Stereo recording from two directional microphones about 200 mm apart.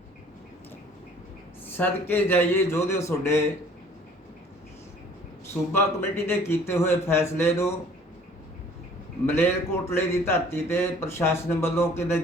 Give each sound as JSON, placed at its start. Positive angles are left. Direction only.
{"t": 1.6, "sound": "a man's voice", "side_deg": 10}
{"t": 5.7, "sound": "a man's voice", "side_deg": 10}
{"t": 9.2, "sound": "a man's voice", "side_deg": 10}